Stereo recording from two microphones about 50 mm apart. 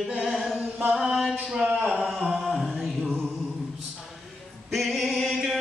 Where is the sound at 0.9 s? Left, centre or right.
Centre.